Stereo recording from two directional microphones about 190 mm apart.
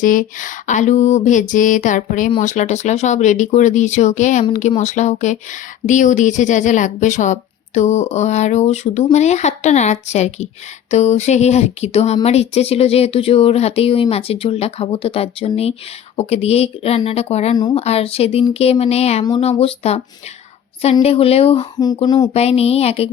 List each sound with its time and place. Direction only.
0.0 s speech: 45° left (ahead or behind)
21.0 s speech: 30° left (ahead or behind)
21.8 s speech: 20° left (ahead or behind)
22.3 s speech: 35° left (ahead or behind)